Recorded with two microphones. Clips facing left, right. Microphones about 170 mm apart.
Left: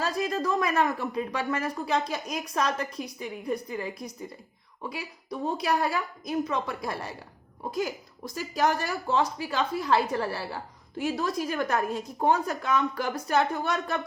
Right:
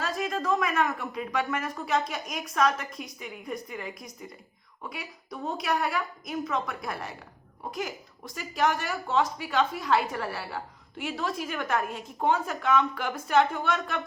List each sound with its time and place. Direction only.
0.0 s a woman's voice: 35° left (ahead or behind)
8.4 s a woman's voice: 35° left (ahead or behind)